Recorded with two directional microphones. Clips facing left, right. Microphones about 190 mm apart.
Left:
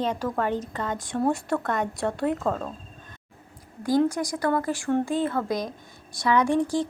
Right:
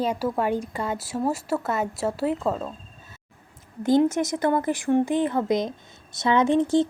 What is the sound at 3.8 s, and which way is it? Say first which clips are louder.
Speech: right 3 dB; 25° right (ahead or behind).